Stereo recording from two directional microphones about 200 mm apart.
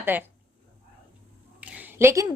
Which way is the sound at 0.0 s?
10° right (ahead or behind).